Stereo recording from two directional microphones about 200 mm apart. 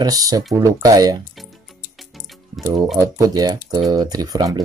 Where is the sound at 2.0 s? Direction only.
Centre (ahead or behind).